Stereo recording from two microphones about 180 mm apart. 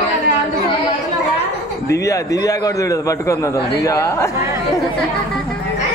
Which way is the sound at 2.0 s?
20° left (ahead or behind).